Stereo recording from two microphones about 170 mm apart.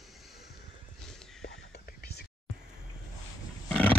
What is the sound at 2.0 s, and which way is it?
Whispering, 75° left (ahead or behind).